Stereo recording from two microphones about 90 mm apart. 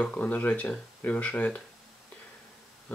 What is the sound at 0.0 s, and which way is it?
Speech, 15° left (ahead or behind).